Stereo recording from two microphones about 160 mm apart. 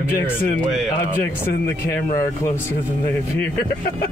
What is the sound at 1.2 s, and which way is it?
Speech, 15° left (ahead or behind).